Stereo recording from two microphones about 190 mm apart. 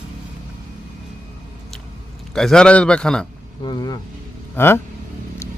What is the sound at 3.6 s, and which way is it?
Speech, 20° left (ahead or behind).